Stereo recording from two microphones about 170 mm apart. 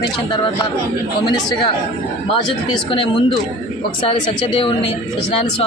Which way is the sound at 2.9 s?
30° left (ahead or behind).